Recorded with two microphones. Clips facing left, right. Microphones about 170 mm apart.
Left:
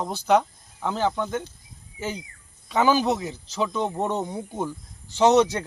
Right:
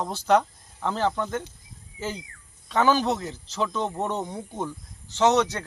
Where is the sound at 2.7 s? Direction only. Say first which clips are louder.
Left 1 dB; 5° left (ahead or behind).